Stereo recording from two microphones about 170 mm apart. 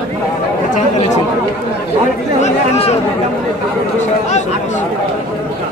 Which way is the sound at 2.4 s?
40° left (ahead or behind).